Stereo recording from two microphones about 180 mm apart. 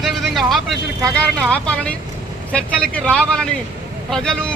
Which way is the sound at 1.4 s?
5° left (ahead or behind).